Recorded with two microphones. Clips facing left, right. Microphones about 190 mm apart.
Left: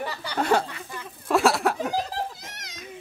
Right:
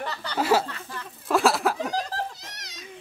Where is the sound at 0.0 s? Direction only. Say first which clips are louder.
Left 1 dB; 10° left (ahead or behind).